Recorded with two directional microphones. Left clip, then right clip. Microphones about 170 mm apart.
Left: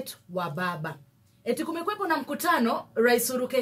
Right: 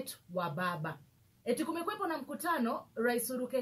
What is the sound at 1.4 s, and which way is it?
Speech, 10° left (ahead or behind).